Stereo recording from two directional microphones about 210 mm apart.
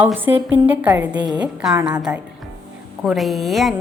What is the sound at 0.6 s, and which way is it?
A woman's voice, 10° right (ahead or behind).